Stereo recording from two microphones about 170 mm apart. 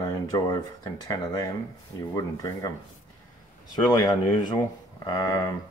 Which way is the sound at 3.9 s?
20° left (ahead or behind).